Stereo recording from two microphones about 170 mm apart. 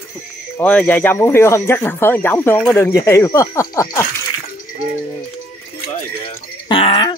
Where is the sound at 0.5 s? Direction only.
10° left (ahead or behind).